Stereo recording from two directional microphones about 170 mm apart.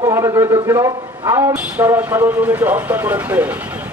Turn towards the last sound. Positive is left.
turn(degrees=-10)  # may be behind; listen again after turning